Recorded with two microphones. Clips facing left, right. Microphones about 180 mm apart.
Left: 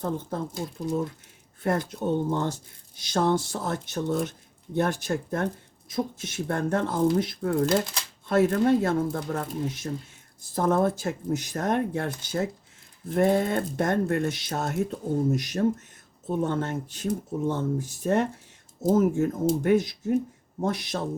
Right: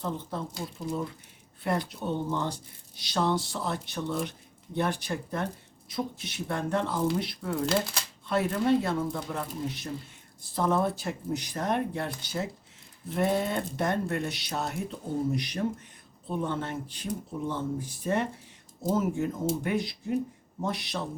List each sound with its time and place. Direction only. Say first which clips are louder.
0.0 s speech: left 4 dB; 50° left (ahead or behind)
1.6 s speech: left 4 dB; 45° left (ahead or behind)